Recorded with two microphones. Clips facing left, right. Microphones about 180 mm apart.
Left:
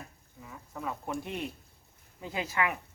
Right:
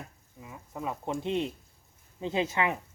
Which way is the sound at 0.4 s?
20° right (ahead or behind).